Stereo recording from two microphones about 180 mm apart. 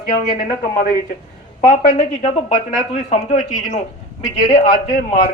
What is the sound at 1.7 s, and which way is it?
A man's voice, 45° left (ahead or behind).